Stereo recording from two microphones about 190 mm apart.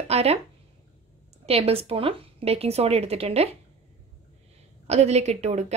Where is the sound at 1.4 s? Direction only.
30° right (ahead or behind).